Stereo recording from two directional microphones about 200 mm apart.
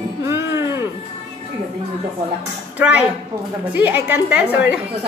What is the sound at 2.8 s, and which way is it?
A woman's voice, 5° right (ahead or behind).